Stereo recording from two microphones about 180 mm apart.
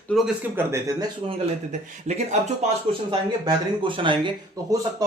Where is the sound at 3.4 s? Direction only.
25° right (ahead or behind).